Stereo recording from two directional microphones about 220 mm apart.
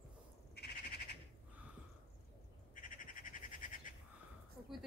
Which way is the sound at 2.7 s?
35° left (ahead or behind).